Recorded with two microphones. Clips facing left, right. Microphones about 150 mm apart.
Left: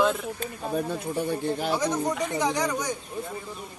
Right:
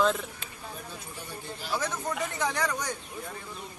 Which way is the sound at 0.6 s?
60° left (ahead or behind).